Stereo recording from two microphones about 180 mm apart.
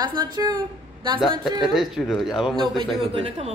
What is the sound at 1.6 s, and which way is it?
Speech, centre (ahead or behind).